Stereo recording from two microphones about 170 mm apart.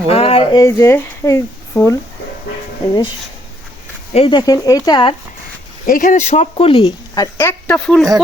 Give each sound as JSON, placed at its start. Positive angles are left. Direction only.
{"t": 0.1, "sound": "a sound", "side_deg": 35}
{"t": 0.6, "sound": "speech", "side_deg": 15}
{"t": 4.1, "sound": "speech", "side_deg": 30}
{"t": 5.8, "sound": "speech", "side_deg": 55}
{"t": 7.2, "sound": "speech", "side_deg": 15}